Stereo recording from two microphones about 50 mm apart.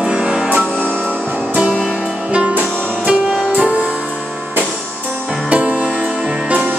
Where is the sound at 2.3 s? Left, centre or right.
Right.